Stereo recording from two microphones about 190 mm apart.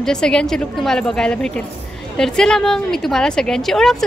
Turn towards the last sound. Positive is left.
turn(degrees=0)  # may be behind; listen again after turning